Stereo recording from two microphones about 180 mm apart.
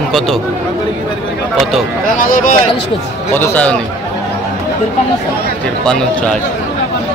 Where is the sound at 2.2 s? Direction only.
50° left (ahead or behind).